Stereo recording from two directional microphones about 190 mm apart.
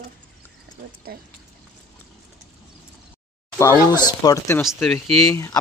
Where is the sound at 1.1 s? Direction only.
55° right (ahead or behind).